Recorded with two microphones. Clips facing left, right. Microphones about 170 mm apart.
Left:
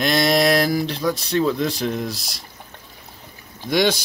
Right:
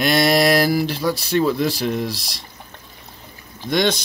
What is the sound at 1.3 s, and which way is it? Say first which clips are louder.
Speech: right 2 dB; 5° right (ahead or behind).